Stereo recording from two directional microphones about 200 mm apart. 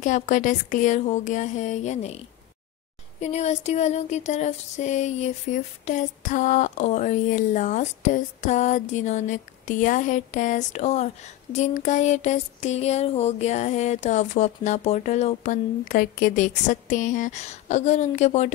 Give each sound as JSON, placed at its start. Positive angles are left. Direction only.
{"t": 0.0, "sound": "music", "side_deg": 40}